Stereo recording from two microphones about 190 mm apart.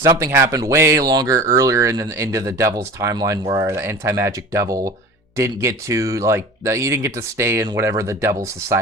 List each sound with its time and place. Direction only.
0.0 s speech: 15° right (ahead or behind)